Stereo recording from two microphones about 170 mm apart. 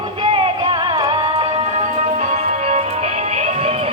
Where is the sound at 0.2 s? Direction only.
30° right (ahead or behind).